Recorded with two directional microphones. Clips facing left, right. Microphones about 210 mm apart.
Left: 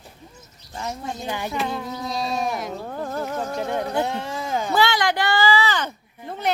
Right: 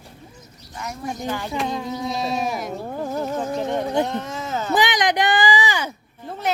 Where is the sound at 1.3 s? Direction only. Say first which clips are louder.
Right 1 dB; 15° left (ahead or behind).